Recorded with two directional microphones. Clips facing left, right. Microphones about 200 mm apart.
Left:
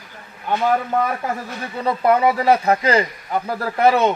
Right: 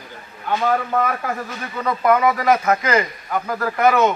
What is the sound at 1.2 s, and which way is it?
Speech, 30° left (ahead or behind).